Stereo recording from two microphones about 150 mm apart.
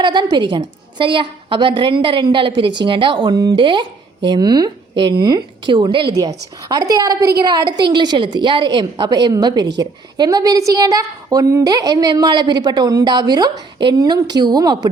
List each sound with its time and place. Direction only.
0.0 s a woman's voice: 30° right (ahead or behind)